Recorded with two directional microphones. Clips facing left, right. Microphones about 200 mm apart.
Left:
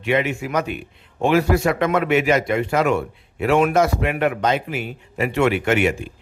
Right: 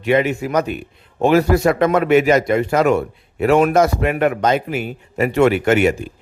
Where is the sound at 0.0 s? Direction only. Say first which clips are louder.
Right 4 dB; 40° right (ahead or behind).